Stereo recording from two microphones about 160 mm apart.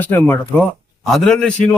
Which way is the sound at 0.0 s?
10° left (ahead or behind).